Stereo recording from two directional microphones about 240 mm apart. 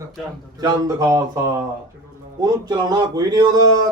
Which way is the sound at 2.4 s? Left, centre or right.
Centre.